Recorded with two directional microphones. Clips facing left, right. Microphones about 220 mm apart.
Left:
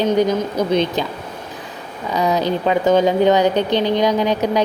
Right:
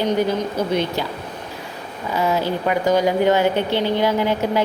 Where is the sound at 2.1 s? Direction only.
20° left (ahead or behind).